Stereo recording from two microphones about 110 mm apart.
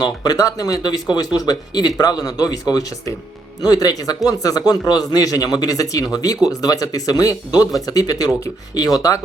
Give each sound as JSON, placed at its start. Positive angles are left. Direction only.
{"t": 0.0, "sound": "speech", "side_deg": 40}